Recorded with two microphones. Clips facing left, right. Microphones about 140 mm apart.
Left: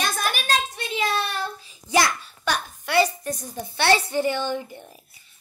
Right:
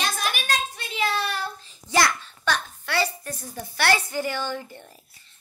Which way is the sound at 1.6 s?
10° left (ahead or behind).